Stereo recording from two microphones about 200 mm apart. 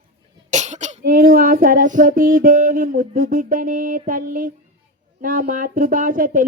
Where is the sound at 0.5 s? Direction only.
35° right (ahead or behind).